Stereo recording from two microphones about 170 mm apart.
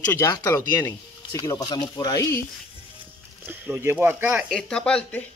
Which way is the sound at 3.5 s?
10° right (ahead or behind).